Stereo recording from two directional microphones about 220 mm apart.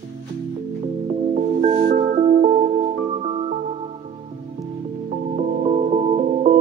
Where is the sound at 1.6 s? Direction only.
35° right (ahead or behind).